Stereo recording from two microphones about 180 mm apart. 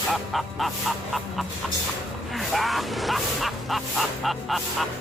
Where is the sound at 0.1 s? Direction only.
Centre (ahead or behind).